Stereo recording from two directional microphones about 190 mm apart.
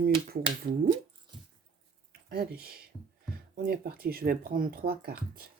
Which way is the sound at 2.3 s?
55° right (ahead or behind).